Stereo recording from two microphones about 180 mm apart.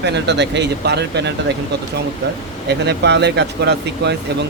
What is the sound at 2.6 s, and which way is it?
Speech, 70° right (ahead or behind).